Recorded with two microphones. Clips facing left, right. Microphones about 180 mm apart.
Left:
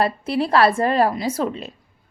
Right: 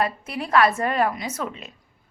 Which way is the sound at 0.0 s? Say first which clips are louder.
Left 6 dB; 30° left (ahead or behind).